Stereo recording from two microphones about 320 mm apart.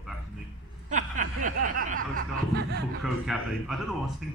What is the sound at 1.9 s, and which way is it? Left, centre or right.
Snicker, right.